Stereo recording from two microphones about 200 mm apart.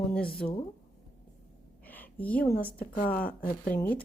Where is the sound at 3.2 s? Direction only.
45° left (ahead or behind).